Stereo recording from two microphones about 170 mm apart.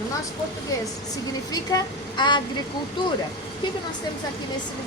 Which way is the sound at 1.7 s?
20° left (ahead or behind).